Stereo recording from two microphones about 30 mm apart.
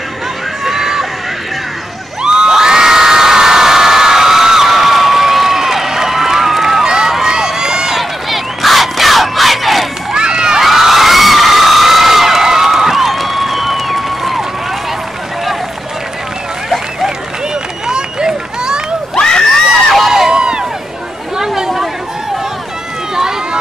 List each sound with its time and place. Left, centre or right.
0.7 s a sound: centre
2.2 s crowd: right
7.1 s run: centre
8.0 s battle cry: centre
10.1 s children shouting: right
10.6 s crowd: centre
17.8 s run: right
19.1 s crowd: left
20.1 s a sound: centre
20.3 s a sound: right
21.5 s chatter: centre
23.1 s run: centre